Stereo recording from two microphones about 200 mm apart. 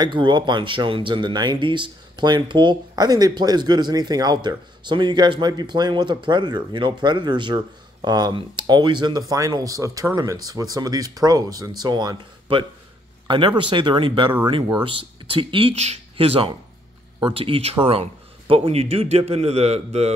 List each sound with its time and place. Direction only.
0.0 s a man's voice: 20° right (ahead or behind)